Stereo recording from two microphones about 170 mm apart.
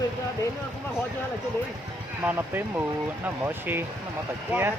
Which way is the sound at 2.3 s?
10° right (ahead or behind).